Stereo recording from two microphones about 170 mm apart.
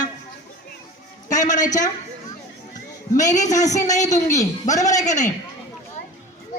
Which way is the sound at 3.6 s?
20° left (ahead or behind).